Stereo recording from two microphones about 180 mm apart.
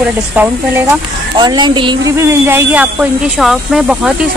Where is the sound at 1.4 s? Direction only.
25° right (ahead or behind).